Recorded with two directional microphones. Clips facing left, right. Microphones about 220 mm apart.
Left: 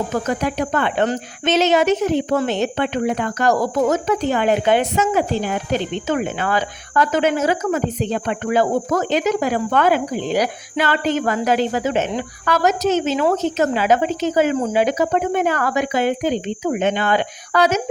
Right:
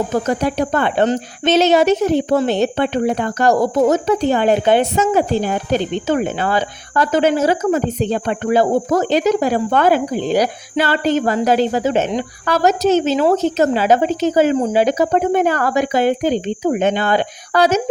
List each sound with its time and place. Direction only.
0.1 s speech: 35° right (ahead or behind)